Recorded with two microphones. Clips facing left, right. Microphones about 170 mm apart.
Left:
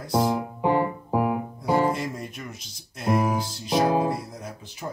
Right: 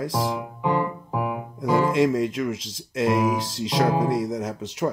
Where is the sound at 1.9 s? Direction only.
90° right.